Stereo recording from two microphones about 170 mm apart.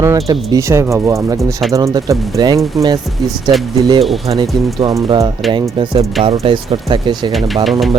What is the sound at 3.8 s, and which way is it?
Speech, 25° right (ahead or behind).